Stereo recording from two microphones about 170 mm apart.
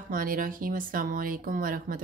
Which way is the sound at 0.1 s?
55° right (ahead or behind).